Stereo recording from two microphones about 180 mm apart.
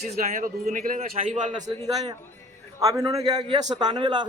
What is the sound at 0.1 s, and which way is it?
A man's voice, 50° right (ahead or behind).